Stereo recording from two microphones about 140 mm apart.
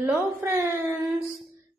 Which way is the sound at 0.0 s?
20° right (ahead or behind).